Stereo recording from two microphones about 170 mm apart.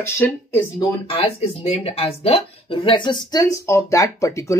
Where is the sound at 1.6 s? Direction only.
35° left (ahead or behind); by 4.5 s 15° left (ahead or behind).